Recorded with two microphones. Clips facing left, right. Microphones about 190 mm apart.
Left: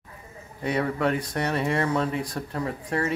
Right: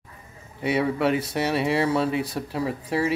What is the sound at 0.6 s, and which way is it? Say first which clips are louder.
Speech: right 3 dB; 10° right (ahead or behind).